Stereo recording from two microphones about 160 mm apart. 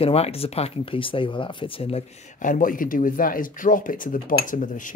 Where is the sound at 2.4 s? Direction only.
55° left (ahead or behind).